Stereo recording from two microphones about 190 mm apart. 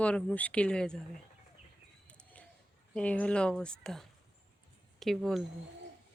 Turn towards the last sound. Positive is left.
turn(degrees=0)  # may be behind; listen again after turning